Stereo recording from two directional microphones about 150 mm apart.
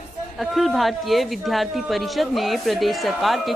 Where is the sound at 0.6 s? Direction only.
Centre (ahead or behind).